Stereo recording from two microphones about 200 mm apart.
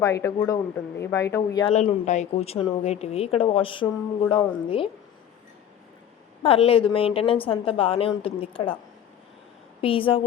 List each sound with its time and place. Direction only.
0.0 s speech: 15° left (ahead or behind)
1.7 s speech: 35° left (ahead or behind)
6.4 s speech: 30° left (ahead or behind)
9.8 s speech: 25° left (ahead or behind)